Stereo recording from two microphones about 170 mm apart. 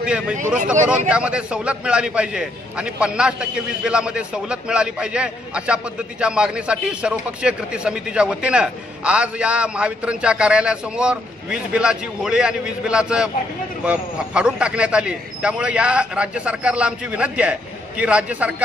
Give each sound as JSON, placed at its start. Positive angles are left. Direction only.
{"t": 0.0, "sound": "a man's voice", "side_deg": -5}